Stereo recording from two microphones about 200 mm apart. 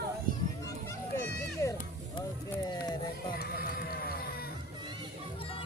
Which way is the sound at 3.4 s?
45° left (ahead or behind).